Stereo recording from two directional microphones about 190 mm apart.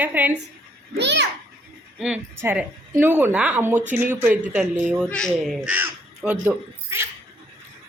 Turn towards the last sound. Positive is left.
turn(degrees=-10)  # may be behind; listen again after turning